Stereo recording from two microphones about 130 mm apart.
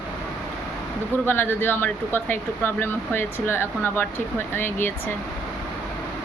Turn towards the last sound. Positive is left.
turn(degrees=15)  # may be behind; listen again after turning